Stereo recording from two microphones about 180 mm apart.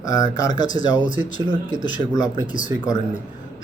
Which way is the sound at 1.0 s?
45° left (ahead or behind).